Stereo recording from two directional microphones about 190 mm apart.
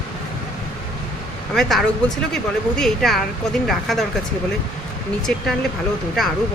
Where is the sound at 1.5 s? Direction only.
Centre (ahead or behind).